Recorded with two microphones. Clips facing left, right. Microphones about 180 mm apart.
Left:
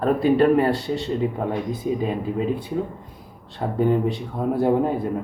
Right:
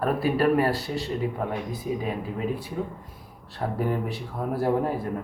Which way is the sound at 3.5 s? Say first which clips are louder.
Left 6 dB; 25° left (ahead or behind).